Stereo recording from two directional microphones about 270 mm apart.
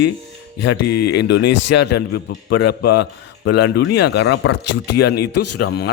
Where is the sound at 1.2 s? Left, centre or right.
Left.